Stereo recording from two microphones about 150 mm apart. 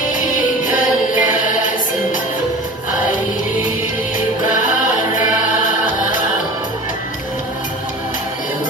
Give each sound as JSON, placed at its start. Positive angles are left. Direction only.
{"t": 0.7, "sound": "music", "side_deg": 60}